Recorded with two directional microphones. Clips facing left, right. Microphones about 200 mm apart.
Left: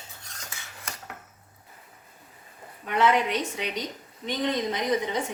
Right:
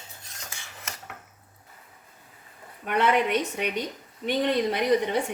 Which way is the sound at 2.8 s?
60° right (ahead or behind).